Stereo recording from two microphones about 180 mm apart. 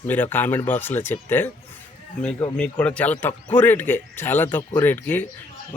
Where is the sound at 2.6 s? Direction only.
5° left (ahead or behind).